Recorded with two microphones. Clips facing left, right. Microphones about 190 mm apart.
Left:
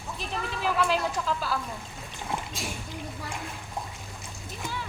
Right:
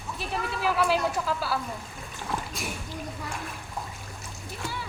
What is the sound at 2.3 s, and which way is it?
Dog, 25° left (ahead or behind).